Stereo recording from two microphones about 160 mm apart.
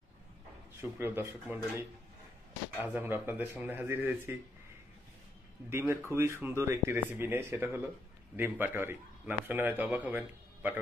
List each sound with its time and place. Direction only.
0.7 s a man's voice: 15° right (ahead or behind)
5.7 s a man's voice: 15° right (ahead or behind)